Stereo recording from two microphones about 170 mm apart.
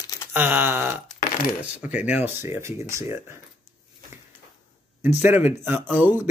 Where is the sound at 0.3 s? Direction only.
10° right (ahead or behind).